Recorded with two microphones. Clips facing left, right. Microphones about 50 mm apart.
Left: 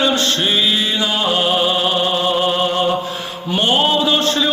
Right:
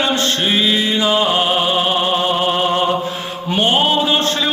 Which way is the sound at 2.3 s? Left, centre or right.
Right.